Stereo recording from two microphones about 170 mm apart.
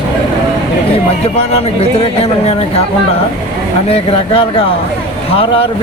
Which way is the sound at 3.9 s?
35° left (ahead or behind).